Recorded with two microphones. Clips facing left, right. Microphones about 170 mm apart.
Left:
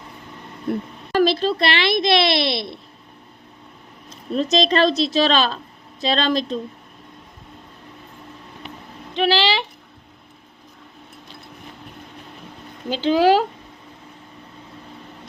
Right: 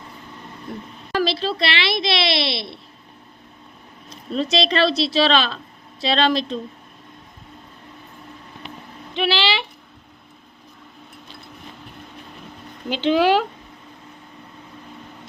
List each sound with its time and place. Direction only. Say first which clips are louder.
0.7 s a woman's voice: left 10 dB; 65° left (ahead or behind)
1.1 s speech: left 4 dB; 50° left (ahead or behind)
4.4 s speech: left 2 dB; 45° left (ahead or behind)
9.1 s a sound: left 3 dB; 40° left (ahead or behind)
12.9 s speech: left 1 dB; 40° left (ahead or behind)